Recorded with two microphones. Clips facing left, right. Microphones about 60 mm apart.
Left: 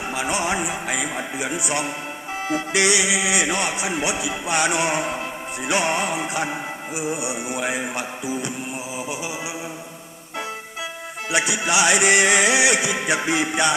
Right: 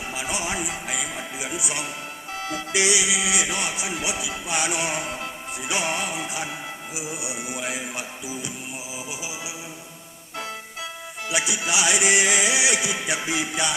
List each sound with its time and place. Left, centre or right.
0.1 s music: left
11.3 s music: left